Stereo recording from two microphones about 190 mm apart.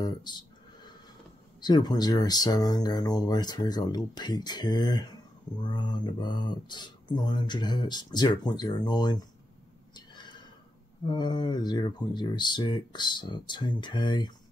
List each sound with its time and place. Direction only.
0.0 s speech: 20° left (ahead or behind)
1.6 s speech: 20° left (ahead or behind)
9.9 s neigh: 20° left (ahead or behind)
11.1 s speech: 25° left (ahead or behind)